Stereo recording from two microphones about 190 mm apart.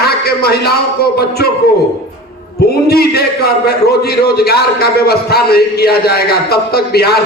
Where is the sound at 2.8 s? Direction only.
55° left (ahead or behind).